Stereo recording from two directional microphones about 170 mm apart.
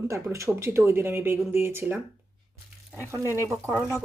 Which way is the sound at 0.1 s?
15° right (ahead or behind).